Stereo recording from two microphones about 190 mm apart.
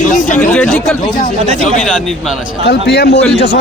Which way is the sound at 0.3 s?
10° left (ahead or behind).